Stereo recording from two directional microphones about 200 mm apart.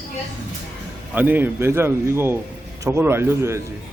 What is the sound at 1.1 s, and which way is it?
Speech, 10° right (ahead or behind).